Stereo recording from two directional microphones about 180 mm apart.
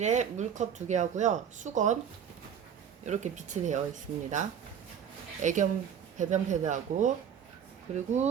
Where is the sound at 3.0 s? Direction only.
40° right (ahead or behind).